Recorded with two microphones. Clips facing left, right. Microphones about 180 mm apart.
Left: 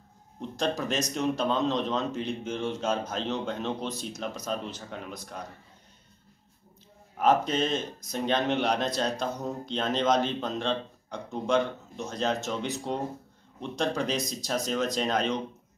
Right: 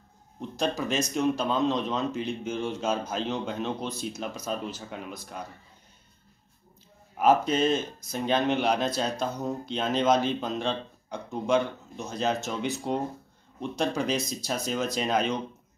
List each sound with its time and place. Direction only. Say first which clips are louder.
0.4 s speech: right 1 dB; centre (ahead or behind)
7.2 s speech: right 2 dB; 5° right (ahead or behind)